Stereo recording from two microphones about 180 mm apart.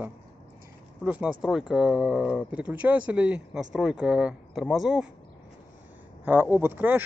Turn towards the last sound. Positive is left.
turn(degrees=-10)  # may be behind; listen again after turning